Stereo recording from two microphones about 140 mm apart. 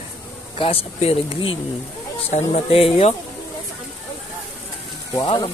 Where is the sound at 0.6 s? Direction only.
45° left (ahead or behind).